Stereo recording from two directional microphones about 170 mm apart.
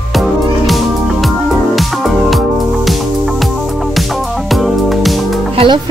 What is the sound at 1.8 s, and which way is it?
Music, centre (ahead or behind).